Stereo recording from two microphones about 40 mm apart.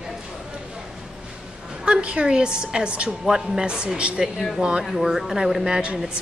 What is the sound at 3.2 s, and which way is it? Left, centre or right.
Speech, centre.